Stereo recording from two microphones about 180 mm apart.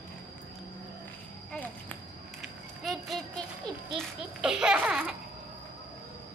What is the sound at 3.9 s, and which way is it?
Babbling, centre (ahead or behind).